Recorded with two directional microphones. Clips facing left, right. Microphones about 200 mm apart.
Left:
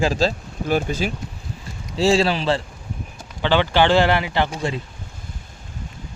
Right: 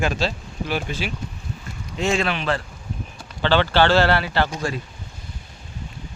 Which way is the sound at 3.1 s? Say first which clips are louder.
Even; 15° left (ahead or behind).